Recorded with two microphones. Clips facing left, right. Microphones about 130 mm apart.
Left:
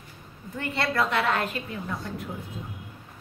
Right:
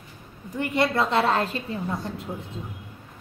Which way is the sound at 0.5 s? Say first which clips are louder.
Right 4 dB; 15° right (ahead or behind).